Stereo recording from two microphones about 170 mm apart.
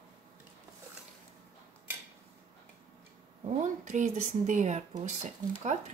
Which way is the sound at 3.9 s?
45° right (ahead or behind).